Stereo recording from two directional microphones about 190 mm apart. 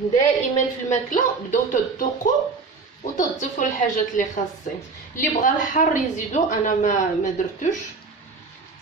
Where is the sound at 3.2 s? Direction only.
40° left (ahead or behind).